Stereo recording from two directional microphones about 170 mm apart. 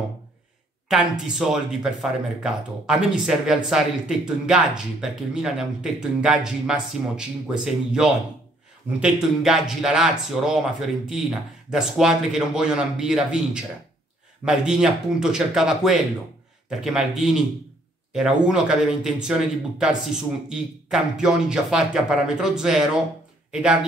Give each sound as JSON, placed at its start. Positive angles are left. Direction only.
{"t": 0.8, "sound": "speech", "side_deg": -5}